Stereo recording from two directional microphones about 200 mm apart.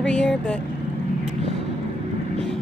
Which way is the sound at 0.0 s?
5° left (ahead or behind).